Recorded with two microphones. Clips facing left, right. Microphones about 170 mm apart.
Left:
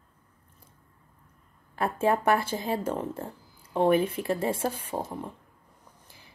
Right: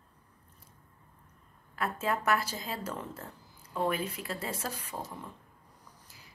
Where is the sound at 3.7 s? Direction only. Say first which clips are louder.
Left 9 dB; 25° left (ahead or behind).